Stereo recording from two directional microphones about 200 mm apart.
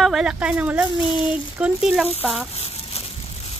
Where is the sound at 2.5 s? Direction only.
30° left (ahead or behind).